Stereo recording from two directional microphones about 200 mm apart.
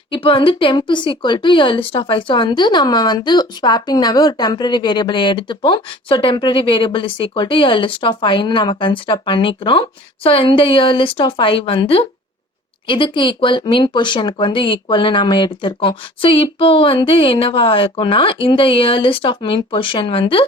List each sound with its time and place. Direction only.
0.1 s speech: 25° left (ahead or behind)